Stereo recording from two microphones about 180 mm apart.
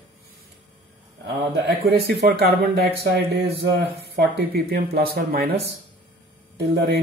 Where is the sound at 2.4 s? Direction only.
65° right (ahead or behind).